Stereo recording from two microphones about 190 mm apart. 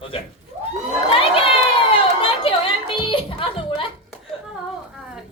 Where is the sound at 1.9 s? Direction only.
30° left (ahead or behind).